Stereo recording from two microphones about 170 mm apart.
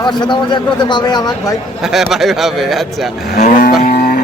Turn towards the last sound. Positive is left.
turn(degrees=55)  # may be behind; listen again after turning